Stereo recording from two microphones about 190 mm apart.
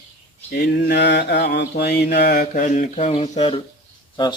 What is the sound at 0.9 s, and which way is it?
Mantra, 65° left (ahead or behind).